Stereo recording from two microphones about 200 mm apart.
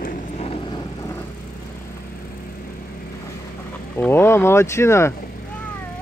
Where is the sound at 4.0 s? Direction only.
10° left (ahead or behind).